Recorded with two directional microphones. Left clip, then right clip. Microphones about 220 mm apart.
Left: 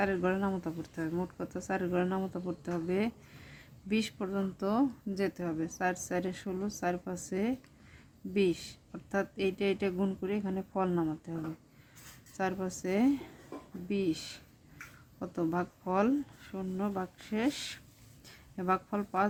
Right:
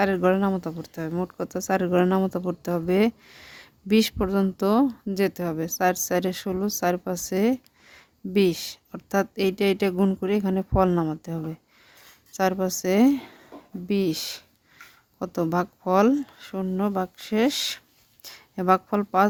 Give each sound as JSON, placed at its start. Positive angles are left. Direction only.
{"t": 0.0, "sound": "speech", "side_deg": -50}
{"t": 12.4, "sound": "speech", "side_deg": -50}